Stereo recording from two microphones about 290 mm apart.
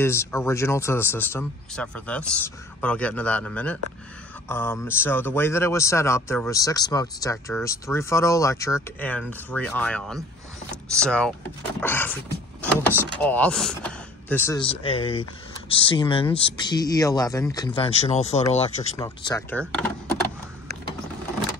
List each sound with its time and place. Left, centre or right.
0.0 s a man's voice: centre
19.0 s a man's voice: centre